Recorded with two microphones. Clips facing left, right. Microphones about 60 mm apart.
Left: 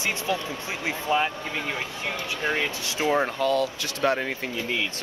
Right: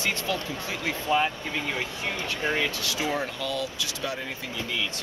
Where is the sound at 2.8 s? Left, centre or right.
Left.